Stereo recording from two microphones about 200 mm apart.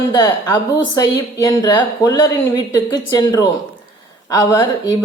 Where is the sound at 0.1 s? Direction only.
20° left (ahead or behind).